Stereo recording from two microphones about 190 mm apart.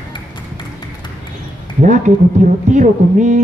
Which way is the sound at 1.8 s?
40° right (ahead or behind).